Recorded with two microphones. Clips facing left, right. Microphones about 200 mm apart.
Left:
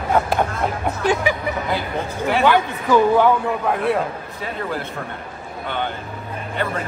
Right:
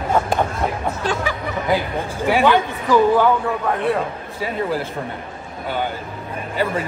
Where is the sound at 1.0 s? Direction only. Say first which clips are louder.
Left 5 dB; 15° left (ahead or behind).